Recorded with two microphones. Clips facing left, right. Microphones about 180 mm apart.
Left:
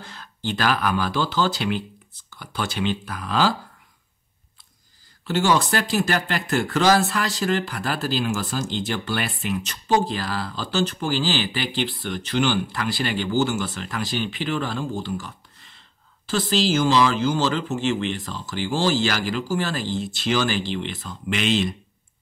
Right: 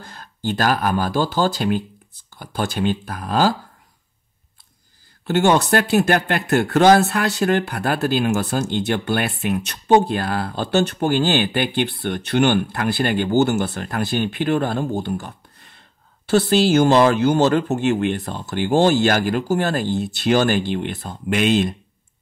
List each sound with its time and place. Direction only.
0.0 s speech: 50° right (ahead or behind)
5.2 s speech: 55° right (ahead or behind)